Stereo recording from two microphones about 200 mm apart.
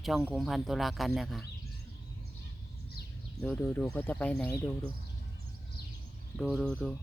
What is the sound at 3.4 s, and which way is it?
Speech, 10° left (ahead or behind).